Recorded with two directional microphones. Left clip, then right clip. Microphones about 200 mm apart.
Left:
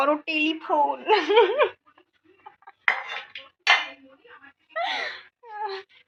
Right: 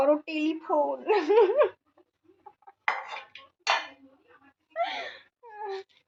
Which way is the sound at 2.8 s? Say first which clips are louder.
Left 5 dB; 5° right (ahead or behind).